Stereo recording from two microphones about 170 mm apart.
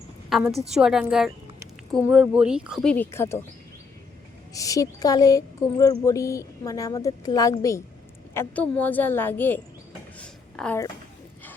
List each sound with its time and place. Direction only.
0.7 s speech: 5° right (ahead or behind)
3.0 s a woman's voice: 15° left (ahead or behind)
4.5 s a woman's voice: 20° left (ahead or behind)
10.2 s a sound: 10° left (ahead or behind)